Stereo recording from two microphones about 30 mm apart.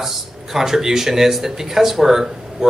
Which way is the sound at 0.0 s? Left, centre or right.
Centre.